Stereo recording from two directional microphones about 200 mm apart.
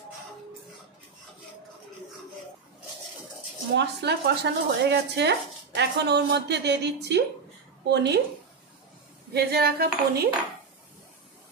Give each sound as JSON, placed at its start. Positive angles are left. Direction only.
{"t": 3.7, "sound": "speech", "side_deg": -55}
{"t": 9.3, "sound": "dishes", "side_deg": -50}